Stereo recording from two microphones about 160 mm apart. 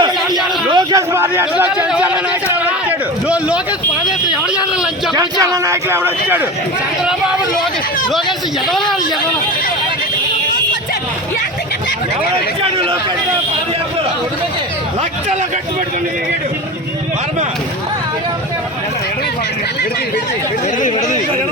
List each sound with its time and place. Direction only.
0.7 s a sound: 25° right (ahead or behind)
1.1 s a man's voice: 15° right (ahead or behind)
5.1 s speech: 25° right (ahead or behind)